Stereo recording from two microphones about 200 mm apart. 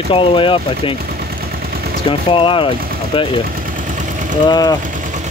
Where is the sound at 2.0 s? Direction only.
25° left (ahead or behind).